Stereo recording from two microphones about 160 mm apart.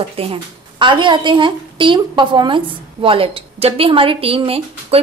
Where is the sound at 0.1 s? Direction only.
35° right (ahead or behind).